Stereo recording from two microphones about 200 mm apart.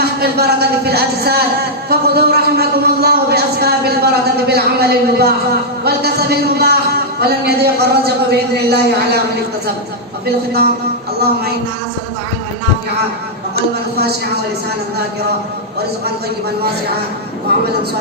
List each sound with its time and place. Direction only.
0.2 s speech: 55° right (ahead or behind)
1.9 s a sound: 50° right (ahead or behind)
6.6 s a man's voice: 50° right (ahead or behind)
17.5 s a man's voice: 55° right (ahead or behind)